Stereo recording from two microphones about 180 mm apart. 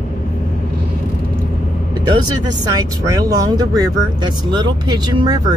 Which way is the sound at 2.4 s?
20° right (ahead or behind).